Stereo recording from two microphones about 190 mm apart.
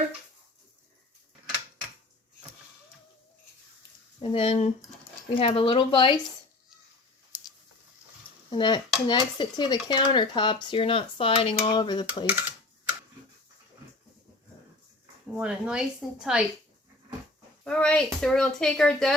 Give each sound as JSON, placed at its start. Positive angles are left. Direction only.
{"t": 4.2, "sound": "speech", "side_deg": 30}
{"t": 5.3, "sound": "cutlery", "side_deg": 30}
{"t": 8.4, "sound": "cutlery", "side_deg": 25}
{"t": 12.2, "sound": "speech", "side_deg": -10}
{"t": 15.4, "sound": "speech", "side_deg": -5}
{"t": 17.6, "sound": "speech", "side_deg": 5}